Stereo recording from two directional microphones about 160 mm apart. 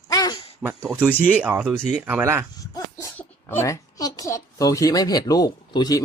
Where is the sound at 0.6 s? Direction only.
5° right (ahead or behind).